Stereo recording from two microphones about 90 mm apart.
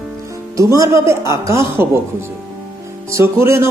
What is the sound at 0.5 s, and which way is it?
Speech, 40° right (ahead or behind).